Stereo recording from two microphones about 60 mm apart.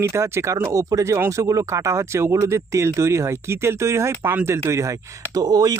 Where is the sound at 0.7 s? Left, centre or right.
Right.